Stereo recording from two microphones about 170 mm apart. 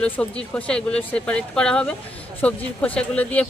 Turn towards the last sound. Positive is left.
turn(degrees=10)  # may be behind; listen again after turning